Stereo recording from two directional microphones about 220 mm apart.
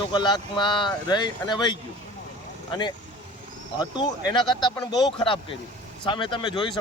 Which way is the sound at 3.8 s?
20° left (ahead or behind).